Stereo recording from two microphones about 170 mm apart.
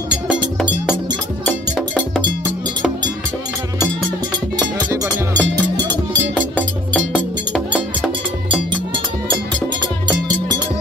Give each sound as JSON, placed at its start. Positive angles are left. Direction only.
{"t": 4.7, "sound": "music", "side_deg": -20}
{"t": 7.2, "sound": "music", "side_deg": 10}